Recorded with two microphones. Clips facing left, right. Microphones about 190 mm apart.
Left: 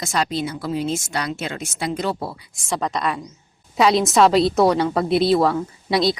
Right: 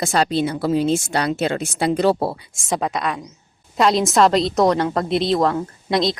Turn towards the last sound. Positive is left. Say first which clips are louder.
# even
turn(degrees=5)  # may be behind; listen again after turning